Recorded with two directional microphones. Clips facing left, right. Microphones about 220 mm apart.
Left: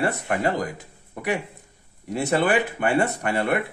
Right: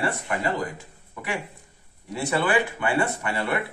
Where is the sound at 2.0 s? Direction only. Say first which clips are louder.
Left 3 dB; 40° left (ahead or behind).